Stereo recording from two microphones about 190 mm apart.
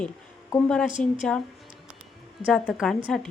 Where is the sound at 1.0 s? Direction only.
5° left (ahead or behind).